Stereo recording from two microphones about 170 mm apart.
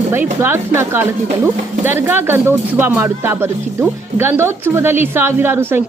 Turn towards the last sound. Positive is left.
turn(degrees=-15)  # may be behind; listen again after turning